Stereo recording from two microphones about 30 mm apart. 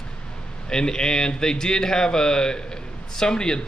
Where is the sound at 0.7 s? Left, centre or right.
Left.